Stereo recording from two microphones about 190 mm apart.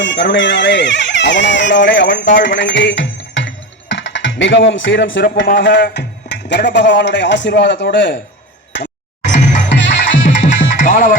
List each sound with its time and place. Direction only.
0.0 s speech: 70° left (ahead or behind)
2.2 s music: 75° left (ahead or behind)
5.2 s speech: 50° left (ahead or behind); by 8.2 s 70° left (ahead or behind)
9.2 s music: 40° left (ahead or behind)
9.6 s music: 75° left (ahead or behind)
10.2 s music: 40° left (ahead or behind)